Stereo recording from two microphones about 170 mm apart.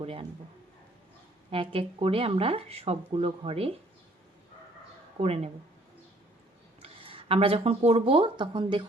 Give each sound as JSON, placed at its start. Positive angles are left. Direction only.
{"t": 0.0, "sound": "speech", "side_deg": -35}
{"t": 1.5, "sound": "speech", "side_deg": -30}
{"t": 5.2, "sound": "speech", "side_deg": -35}
{"t": 6.8, "sound": "speech", "side_deg": -30}